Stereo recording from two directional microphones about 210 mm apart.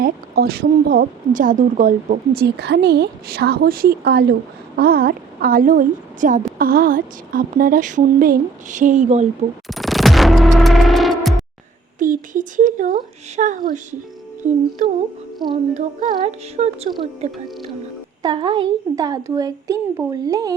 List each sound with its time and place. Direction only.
0.0 s speech: 45° right (ahead or behind)
9.6 s music: centre (ahead or behind)
11.9 s a woman's voice: 40° right (ahead or behind); by 20.6 s 15° right (ahead or behind)